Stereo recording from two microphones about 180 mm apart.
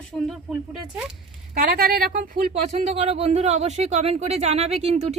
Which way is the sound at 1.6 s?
60° right (ahead or behind).